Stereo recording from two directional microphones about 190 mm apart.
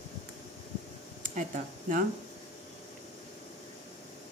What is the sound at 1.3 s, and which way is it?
Speech, 45° right (ahead or behind).